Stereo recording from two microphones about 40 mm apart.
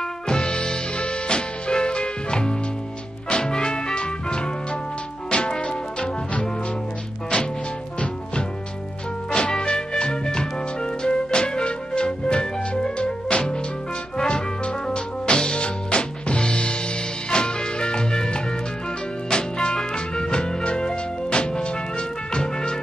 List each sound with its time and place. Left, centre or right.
0.3 s music: left
9.3 s music: left
14.1 s brass instrument: left
14.9 s music: left